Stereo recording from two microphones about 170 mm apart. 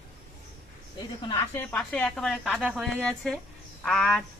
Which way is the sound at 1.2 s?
25° left (ahead or behind).